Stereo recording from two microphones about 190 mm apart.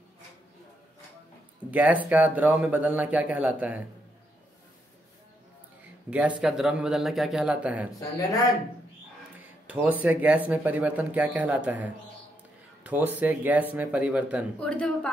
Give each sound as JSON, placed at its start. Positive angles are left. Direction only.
{"t": 1.7, "sound": "speech", "side_deg": -10}
{"t": 6.0, "sound": "speech", "side_deg": -5}
{"t": 8.0, "sound": "speech", "side_deg": 20}
{"t": 9.7, "sound": "speech", "side_deg": -10}
{"t": 14.6, "sound": "speech", "side_deg": 5}